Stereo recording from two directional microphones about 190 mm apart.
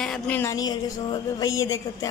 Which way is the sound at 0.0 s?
5° left (ahead or behind).